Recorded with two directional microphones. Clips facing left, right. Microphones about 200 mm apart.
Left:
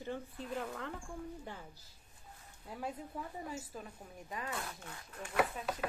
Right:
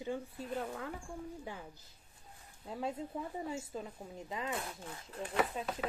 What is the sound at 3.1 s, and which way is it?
Speech, 20° right (ahead or behind).